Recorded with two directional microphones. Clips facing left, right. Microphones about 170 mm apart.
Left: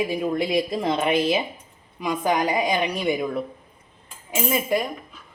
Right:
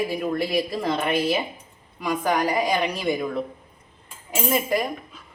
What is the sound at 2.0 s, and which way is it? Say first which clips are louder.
Speech: even; 20° left (ahead or behind).